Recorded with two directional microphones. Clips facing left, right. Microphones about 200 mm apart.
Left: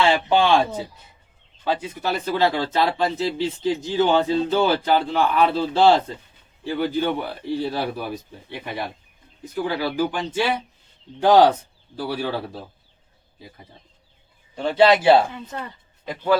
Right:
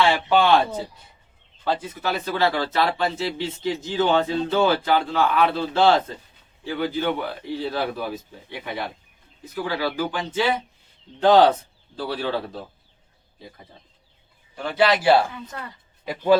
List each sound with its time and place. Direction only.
0.1 s speech: 15° left (ahead or behind)
14.5 s speech: 25° left (ahead or behind)